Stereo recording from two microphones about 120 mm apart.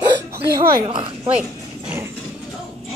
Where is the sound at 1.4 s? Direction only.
10° right (ahead or behind).